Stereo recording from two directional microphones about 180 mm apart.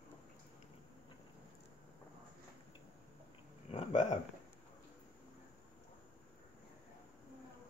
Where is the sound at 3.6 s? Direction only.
40° left (ahead or behind).